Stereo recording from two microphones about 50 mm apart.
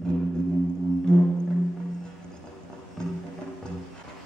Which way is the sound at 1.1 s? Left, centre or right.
Centre.